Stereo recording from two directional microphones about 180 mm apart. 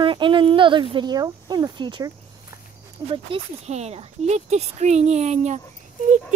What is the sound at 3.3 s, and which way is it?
Speech, 30° right (ahead or behind).